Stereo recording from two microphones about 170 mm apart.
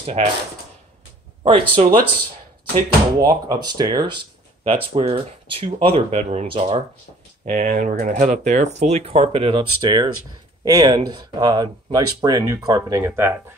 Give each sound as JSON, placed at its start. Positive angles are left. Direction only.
{"t": 0.0, "sound": "speech", "side_deg": -40}
{"t": 1.4, "sound": "speech", "side_deg": -35}
{"t": 3.2, "sound": "speech", "side_deg": -25}
{"t": 7.4, "sound": "speech", "side_deg": -50}